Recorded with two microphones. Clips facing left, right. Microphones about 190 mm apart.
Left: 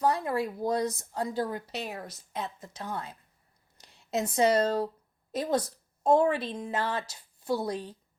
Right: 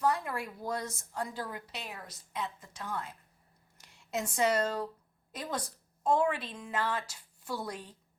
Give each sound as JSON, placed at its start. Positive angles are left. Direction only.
{"t": 0.0, "sound": "a woman's voice", "side_deg": 35}